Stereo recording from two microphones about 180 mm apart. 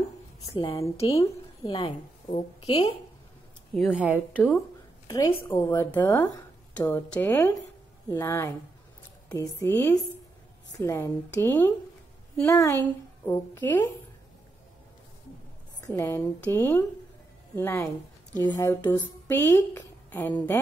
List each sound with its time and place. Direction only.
0.6 s a woman's voice: 20° left (ahead or behind)
1.0 s a woman's voice: 30° left (ahead or behind)
3.7 s speech: centre (ahead or behind)
5.0 s a woman's voice: 20° left (ahead or behind)
15.9 s a woman's voice: 15° left (ahead or behind)